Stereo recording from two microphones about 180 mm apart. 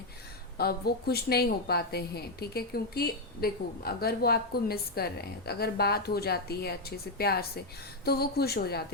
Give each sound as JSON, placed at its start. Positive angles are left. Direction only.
{"t": 0.5, "sound": "a woman's voice", "side_deg": 60}